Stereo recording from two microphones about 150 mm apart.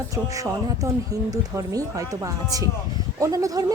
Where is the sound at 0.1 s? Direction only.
20° right (ahead or behind).